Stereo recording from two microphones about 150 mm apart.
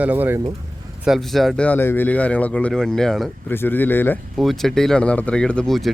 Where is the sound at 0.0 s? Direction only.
10° right (ahead or behind).